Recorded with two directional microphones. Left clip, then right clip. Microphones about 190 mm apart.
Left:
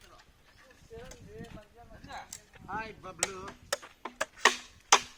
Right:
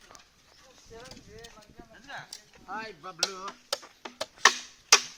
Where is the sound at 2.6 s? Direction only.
45° right (ahead or behind).